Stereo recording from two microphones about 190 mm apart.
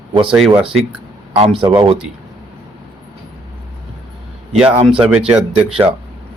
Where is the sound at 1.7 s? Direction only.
25° right (ahead or behind).